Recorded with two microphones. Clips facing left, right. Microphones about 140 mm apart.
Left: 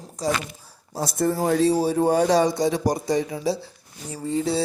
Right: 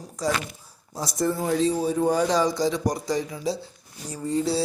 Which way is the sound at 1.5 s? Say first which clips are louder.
Left 5 dB; 60° left (ahead or behind).